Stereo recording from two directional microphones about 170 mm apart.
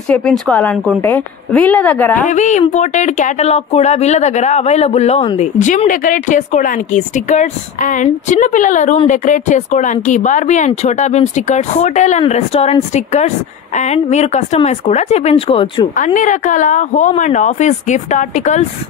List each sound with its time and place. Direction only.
0.1 s a woman's voice: 5° left (ahead or behind)
2.2 s speech: 45° left (ahead or behind)
16.0 s speech: 50° left (ahead or behind)